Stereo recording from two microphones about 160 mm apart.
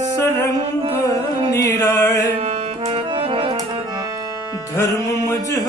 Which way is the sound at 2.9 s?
30° right (ahead or behind).